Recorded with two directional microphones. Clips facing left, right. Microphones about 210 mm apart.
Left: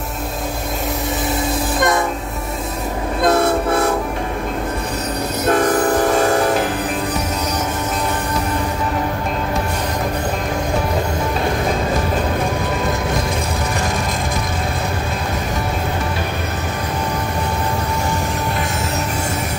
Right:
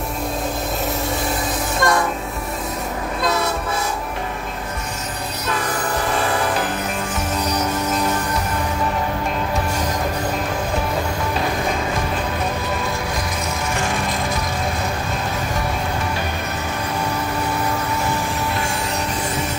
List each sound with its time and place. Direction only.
1.8 s train: 20° left (ahead or behind)
3.2 s train: 55° left (ahead or behind)
5.4 s train: 50° left (ahead or behind)